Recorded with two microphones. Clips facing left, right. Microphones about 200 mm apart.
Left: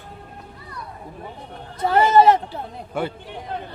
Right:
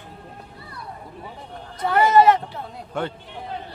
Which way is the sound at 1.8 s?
25° left (ahead or behind).